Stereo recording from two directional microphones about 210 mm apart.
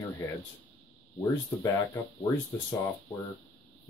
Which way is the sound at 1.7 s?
15° left (ahead or behind).